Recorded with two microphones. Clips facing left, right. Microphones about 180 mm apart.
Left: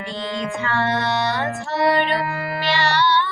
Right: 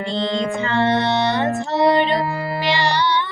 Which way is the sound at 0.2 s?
25° right (ahead or behind).